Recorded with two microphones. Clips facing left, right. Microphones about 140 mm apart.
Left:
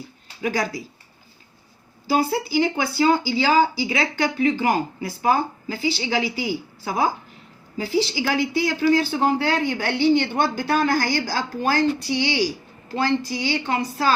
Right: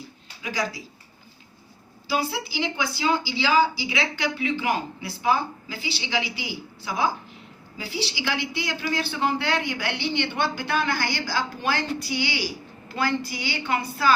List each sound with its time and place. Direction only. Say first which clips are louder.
0.4 s a woman's voice: left 5 dB; 50° left (ahead or behind)
2.0 s a woman's voice: left 6 dB; 45° left (ahead or behind)